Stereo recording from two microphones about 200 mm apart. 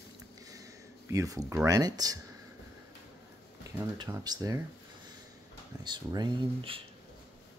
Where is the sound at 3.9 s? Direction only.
20° right (ahead or behind).